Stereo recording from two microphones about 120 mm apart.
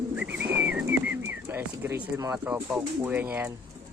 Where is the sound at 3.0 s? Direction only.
15° right (ahead or behind).